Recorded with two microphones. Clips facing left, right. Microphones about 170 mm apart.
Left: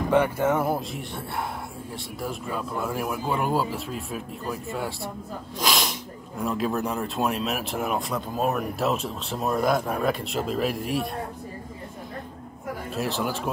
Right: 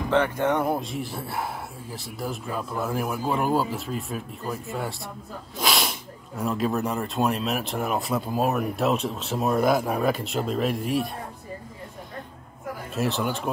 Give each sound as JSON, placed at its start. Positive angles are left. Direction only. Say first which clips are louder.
{"t": 0.1, "sound": "speech", "louder": "even", "side_deg": 10}
{"t": 5.6, "sound": "snort", "louder": "even", "side_deg": 0}
{"t": 6.4, "sound": "speech", "louder": "right 1 dB", "side_deg": 0}
{"t": 12.9, "sound": "speech", "louder": "right 2 dB", "side_deg": 0}